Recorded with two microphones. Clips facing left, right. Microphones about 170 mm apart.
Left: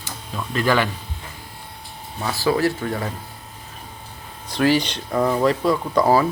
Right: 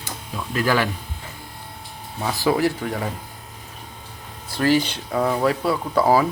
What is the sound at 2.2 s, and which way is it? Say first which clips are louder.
Speech: even; 15° right (ahead or behind).